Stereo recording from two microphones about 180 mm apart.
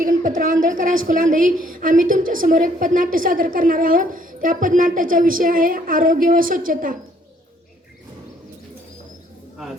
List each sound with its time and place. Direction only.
0.0 s a woman's voice: 50° right (ahead or behind)